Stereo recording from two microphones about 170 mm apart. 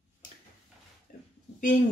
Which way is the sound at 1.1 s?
55° left (ahead or behind).